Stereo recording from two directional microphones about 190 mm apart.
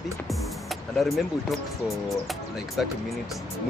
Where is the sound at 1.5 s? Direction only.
Centre (ahead or behind).